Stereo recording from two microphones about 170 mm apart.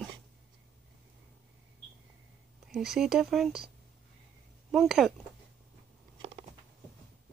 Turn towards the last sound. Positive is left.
turn(degrees=-35)  # may be behind; listen again after turning